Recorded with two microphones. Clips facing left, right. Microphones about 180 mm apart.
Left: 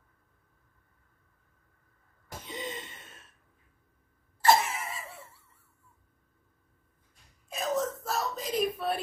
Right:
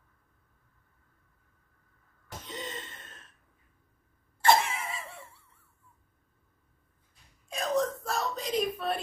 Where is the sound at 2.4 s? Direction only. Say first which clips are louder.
Left 2 dB; 10° left (ahead or behind).